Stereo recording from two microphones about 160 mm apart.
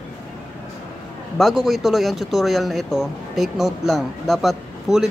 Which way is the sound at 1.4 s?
Centre (ahead or behind).